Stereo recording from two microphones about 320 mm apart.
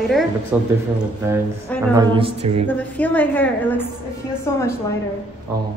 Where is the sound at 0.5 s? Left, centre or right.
Centre.